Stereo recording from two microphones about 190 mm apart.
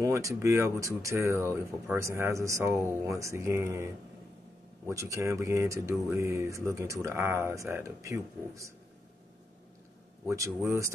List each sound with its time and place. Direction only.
0.0 s speech: 15° right (ahead or behind)
10.3 s speech: 15° right (ahead or behind)